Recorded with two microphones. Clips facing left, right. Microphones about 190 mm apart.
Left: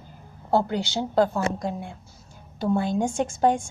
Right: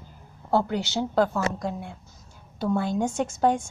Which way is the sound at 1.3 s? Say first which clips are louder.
Left 1 dB; 15° left (ahead or behind).